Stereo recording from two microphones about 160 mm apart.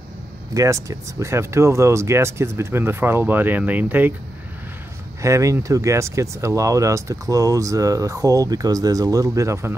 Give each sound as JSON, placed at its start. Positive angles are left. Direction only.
{"t": 0.6, "sound": "speech", "side_deg": -20}
{"t": 5.2, "sound": "speech", "side_deg": -20}